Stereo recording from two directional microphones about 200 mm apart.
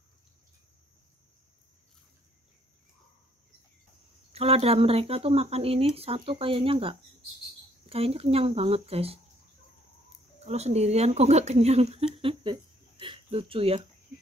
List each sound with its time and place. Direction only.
4.3 s speech: 30° right (ahead or behind)
10.4 s speech: 30° right (ahead or behind)